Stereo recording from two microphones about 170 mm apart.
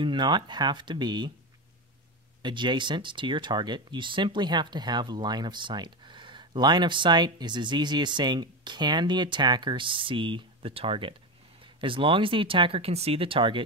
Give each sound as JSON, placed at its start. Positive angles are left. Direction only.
{"t": 0.0, "sound": "speech", "side_deg": -25}
{"t": 2.4, "sound": "speech", "side_deg": -25}